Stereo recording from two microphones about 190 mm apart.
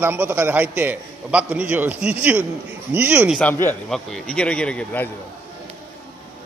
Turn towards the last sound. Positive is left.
turn(degrees=5)  # may be behind; listen again after turning